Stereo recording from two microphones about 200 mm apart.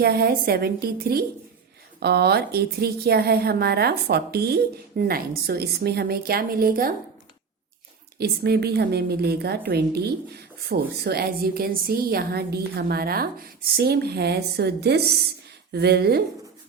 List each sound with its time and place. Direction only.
0.0 s a woman's voice: 50° right (ahead or behind)
8.2 s a woman's voice: 55° right (ahead or behind)